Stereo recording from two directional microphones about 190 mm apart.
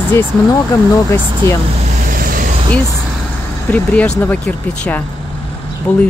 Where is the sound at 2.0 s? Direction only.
50° right (ahead or behind).